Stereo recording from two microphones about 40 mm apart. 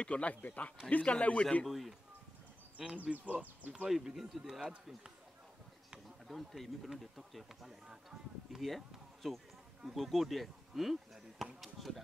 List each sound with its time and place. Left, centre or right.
0.0 s speech: left
1.7 s speech: centre
3.0 s speech: right
3.8 s speech: centre
6.2 s speech: centre
7.6 s speech: centre